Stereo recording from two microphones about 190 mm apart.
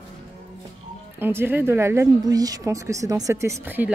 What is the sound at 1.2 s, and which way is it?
A woman's voice, 10° right (ahead or behind).